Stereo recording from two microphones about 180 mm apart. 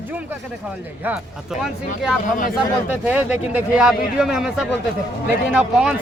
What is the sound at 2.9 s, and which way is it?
Speech, 10° right (ahead or behind).